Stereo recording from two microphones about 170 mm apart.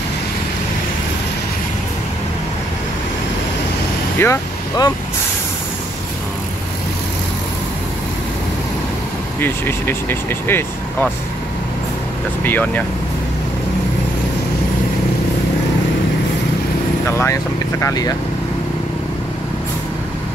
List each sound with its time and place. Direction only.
4.2 s speech: 20° left (ahead or behind)
9.4 s speech: 10° left (ahead or behind)
12.4 s speech: 10° left (ahead or behind)
17.2 s speech: 15° left (ahead or behind)